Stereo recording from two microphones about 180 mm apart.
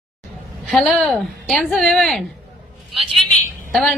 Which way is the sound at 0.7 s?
Centre (ahead or behind).